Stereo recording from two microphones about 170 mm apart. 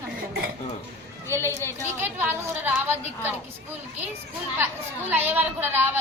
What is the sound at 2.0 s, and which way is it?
A woman's voice, 10° right (ahead or behind).